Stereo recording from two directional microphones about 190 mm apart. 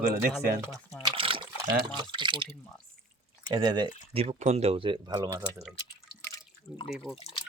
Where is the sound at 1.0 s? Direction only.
25° right (ahead or behind).